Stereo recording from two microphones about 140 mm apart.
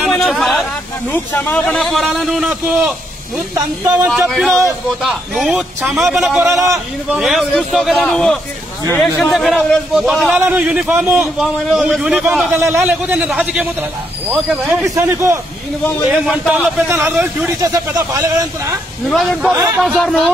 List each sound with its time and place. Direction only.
0.0 s hubbub: centre (ahead or behind)
1.1 s a man's voice: 15° left (ahead or behind); by 2.9 s 5° right (ahead or behind)
3.9 s a man's voice: 10° right (ahead or behind)
16.1 s a man's voice: 5° right (ahead or behind)
17.7 s speech: 25° right (ahead or behind)
19.0 s a man's voice: centre (ahead or behind)